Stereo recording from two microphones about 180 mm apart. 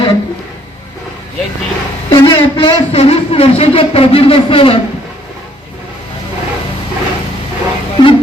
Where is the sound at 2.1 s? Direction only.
25° left (ahead or behind).